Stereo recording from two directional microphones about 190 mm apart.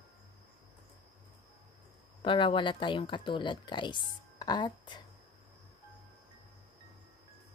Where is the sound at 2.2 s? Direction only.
25° left (ahead or behind).